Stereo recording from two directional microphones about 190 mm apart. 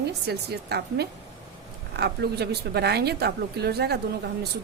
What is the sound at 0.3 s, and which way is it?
Speech, 60° right (ahead or behind).